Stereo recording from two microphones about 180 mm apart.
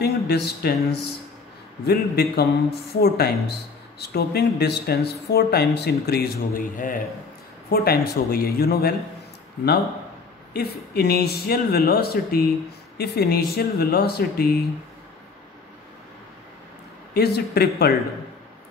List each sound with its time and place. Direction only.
0.0 s speech: 65° left (ahead or behind)
10.5 s speech: 60° left (ahead or behind)
17.1 s speech: 60° left (ahead or behind)